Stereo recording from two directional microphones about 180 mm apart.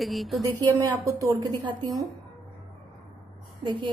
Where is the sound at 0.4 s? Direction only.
20° right (ahead or behind).